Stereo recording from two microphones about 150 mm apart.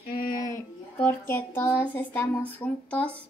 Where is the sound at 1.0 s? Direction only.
15° left (ahead or behind).